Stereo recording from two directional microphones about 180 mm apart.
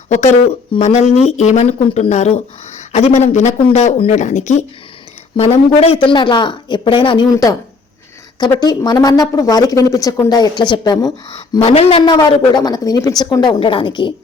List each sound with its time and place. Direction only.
0.1 s a woman's voice: 40° left (ahead or behind)
11.6 s a woman's voice: 35° left (ahead or behind)